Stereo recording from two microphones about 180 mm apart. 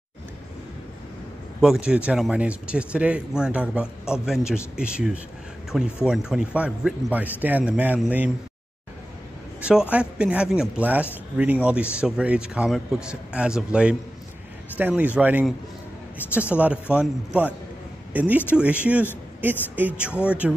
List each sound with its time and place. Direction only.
1.6 s a man's voice: 5° right (ahead or behind)
9.6 s a man's voice: 5° right (ahead or behind)